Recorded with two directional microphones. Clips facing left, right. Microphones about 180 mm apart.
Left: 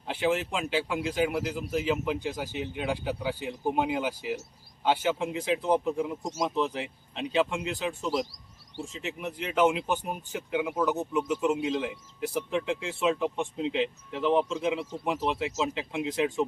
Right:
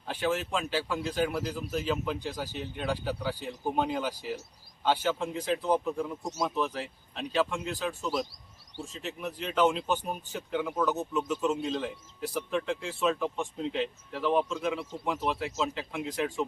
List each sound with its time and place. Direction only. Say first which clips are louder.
0.0 s speech: left 3 dB; 20° left (ahead or behind)